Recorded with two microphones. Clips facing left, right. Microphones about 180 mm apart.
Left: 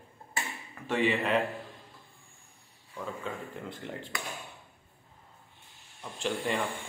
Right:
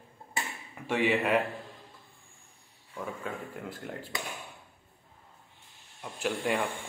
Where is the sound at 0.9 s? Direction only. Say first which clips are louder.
Right 1 dB; 10° right (ahead or behind).